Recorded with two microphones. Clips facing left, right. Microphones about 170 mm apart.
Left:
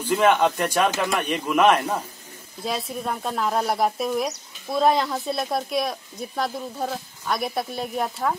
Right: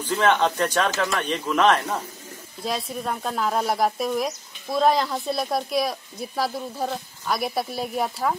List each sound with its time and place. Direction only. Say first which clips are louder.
0.0 s speech: left 2 dB; 10° left (ahead or behind)